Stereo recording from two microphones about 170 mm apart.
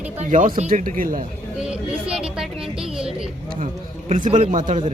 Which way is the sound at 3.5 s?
50° right (ahead or behind).